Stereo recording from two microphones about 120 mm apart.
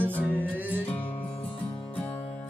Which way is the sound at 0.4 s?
15° right (ahead or behind).